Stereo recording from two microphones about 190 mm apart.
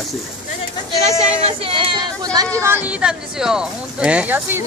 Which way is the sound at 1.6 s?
25° right (ahead or behind).